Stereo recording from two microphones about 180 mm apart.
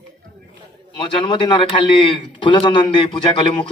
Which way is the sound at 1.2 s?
25° left (ahead or behind).